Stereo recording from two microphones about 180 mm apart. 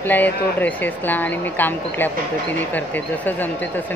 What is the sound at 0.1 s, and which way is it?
Speech, 10° left (ahead or behind).